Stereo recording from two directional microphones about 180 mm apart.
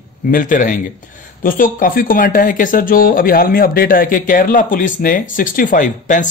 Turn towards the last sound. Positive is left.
turn(degrees=45)  # may be behind; listen again after turning